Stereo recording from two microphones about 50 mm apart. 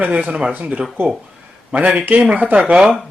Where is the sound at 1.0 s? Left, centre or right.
Right.